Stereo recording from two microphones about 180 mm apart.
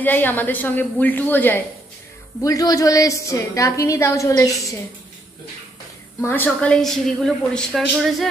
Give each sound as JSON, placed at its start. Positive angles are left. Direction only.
{"t": 0.0, "sound": "a woman's voice", "side_deg": 10}
{"t": 6.2, "sound": "speech", "side_deg": 10}